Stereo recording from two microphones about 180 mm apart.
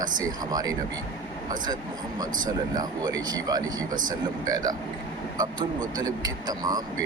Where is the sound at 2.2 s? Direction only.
20° right (ahead or behind).